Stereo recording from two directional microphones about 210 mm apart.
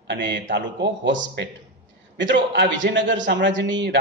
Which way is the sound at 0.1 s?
55° right (ahead or behind).